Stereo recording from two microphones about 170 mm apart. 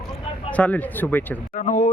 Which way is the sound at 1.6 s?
50° left (ahead or behind).